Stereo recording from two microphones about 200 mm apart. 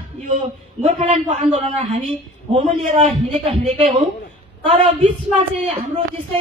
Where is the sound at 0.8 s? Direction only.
35° right (ahead or behind).